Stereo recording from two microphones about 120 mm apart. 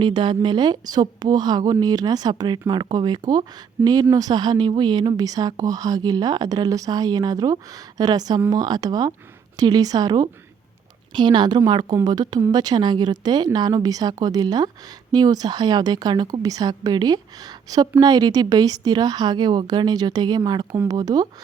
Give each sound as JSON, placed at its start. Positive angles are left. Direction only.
{"t": 0.0, "sound": "speech", "side_deg": -40}